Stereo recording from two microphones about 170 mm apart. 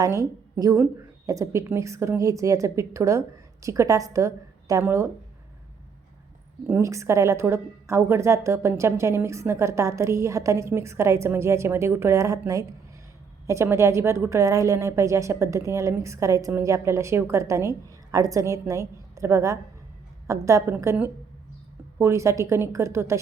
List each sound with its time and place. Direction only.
0.0 s a woman's voice: 20° right (ahead or behind)
6.7 s a woman's voice: 15° right (ahead or behind)